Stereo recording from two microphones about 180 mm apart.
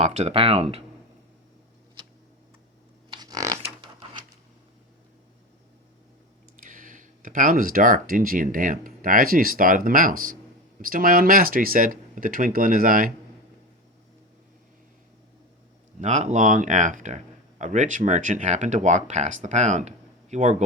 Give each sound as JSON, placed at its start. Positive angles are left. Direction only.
{"t": 0.0, "sound": "speech", "side_deg": -35}
{"t": 3.1, "sound": "a sound", "side_deg": -20}
{"t": 6.6, "sound": "speech", "side_deg": -50}
{"t": 16.0, "sound": "speech", "side_deg": -40}